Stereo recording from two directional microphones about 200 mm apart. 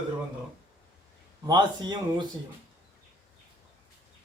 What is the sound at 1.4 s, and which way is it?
Speech, 20° right (ahead or behind).